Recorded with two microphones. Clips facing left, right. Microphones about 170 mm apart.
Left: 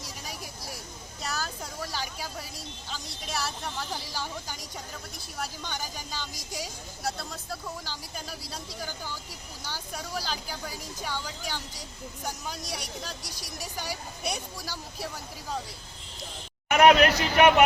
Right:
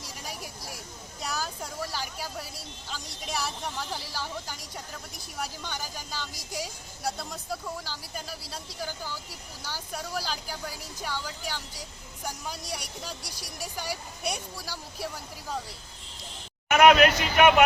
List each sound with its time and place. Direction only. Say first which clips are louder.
1.2 s a sound: right 1 dB; 10° right (ahead or behind)
5.4 s speech: even; 5° right (ahead or behind)
16.7 s speech: even; 35° left (ahead or behind)